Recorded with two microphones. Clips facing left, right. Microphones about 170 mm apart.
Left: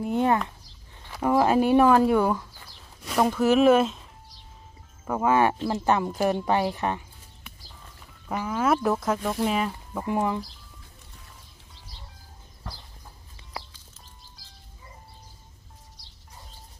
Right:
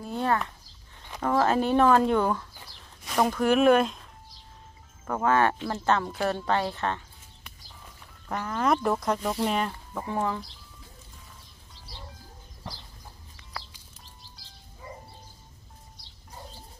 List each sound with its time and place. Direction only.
0.0 s speech: 15° left (ahead or behind); by 4.0 s centre (ahead or behind)
5.0 s speech: 10° left (ahead or behind)
8.3 s speech: 5° left (ahead or behind)